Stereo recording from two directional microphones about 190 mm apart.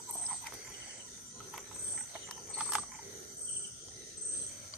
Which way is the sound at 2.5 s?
5° right (ahead or behind).